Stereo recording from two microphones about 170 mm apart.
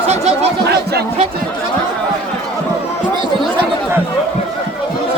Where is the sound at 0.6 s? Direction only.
70° right (ahead or behind).